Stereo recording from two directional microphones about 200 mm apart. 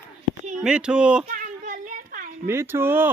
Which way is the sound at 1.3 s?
45° right (ahead or behind).